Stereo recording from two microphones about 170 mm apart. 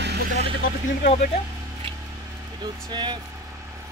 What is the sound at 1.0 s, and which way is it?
Speech, 40° left (ahead or behind).